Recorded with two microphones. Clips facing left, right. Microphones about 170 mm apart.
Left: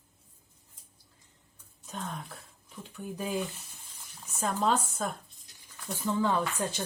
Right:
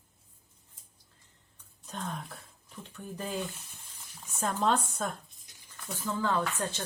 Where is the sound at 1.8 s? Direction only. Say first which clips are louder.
Even; centre (ahead or behind).